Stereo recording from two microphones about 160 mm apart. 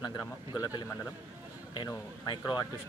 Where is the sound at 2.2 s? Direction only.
25° left (ahead or behind).